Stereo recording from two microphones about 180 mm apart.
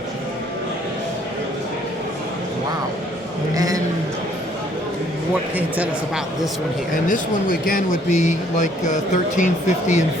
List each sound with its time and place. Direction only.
3.5 s a man's voice: 20° right (ahead or behind)
5.5 s speech: 10° right (ahead or behind)
7.1 s speech: 50° left (ahead or behind)